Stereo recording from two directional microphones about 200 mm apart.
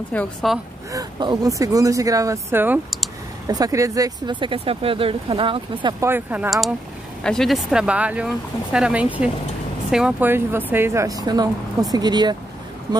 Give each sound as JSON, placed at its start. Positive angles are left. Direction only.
{"t": 0.1, "sound": "speech", "side_deg": 5}
{"t": 0.9, "sound": "speech", "side_deg": -20}